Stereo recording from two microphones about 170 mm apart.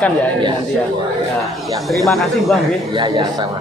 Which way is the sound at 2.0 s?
Centre (ahead or behind).